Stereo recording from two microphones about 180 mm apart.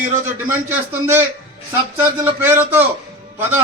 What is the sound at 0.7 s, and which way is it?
Speech, 15° right (ahead or behind).